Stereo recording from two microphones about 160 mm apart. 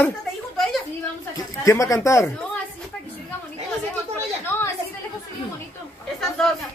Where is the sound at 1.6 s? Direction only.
20° left (ahead or behind).